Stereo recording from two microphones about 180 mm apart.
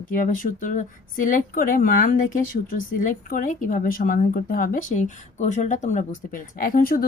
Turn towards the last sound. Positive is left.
turn(degrees=50)  # may be behind; listen again after turning